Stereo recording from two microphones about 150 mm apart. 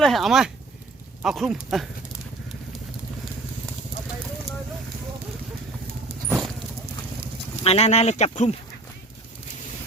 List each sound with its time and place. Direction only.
0.0 s speech: centre (ahead or behind)
6.2 s a sound: centre (ahead or behind)
7.6 s speech: 45° left (ahead or behind)